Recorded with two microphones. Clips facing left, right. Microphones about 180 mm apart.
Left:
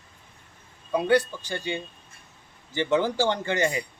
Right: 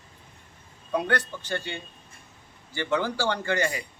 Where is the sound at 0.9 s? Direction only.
10° left (ahead or behind).